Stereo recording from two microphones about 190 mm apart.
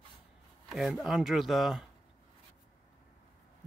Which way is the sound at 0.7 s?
Centre (ahead or behind).